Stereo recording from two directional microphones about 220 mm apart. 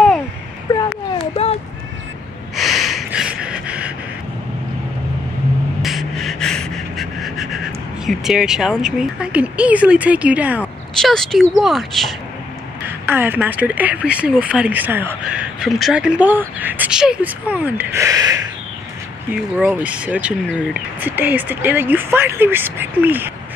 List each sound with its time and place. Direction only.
1.3 s a sound: 25° left (ahead or behind)
2.5 s snort: centre (ahead or behind)
5.8 s gasp: centre (ahead or behind)
8.1 s speech: centre (ahead or behind)
12.8 s speech: 10° right (ahead or behind)